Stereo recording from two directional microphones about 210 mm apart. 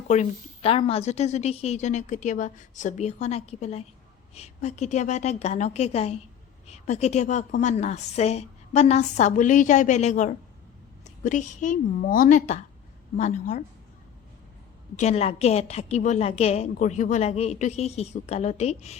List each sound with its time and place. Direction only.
0.1 s a woman's voice: 30° left (ahead or behind)
14.9 s a woman's voice: 30° left (ahead or behind)